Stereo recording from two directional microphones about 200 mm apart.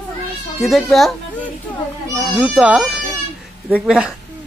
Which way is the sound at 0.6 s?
Centre (ahead or behind).